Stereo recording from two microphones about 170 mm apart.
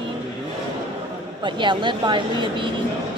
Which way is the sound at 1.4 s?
30° right (ahead or behind).